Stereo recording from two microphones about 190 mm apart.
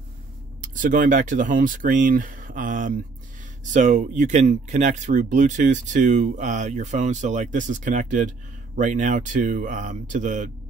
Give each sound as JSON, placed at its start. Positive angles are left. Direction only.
{"t": 0.7, "sound": "speech", "side_deg": -45}